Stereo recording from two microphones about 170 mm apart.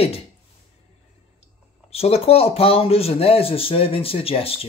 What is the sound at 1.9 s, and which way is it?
Speech, 35° left (ahead or behind).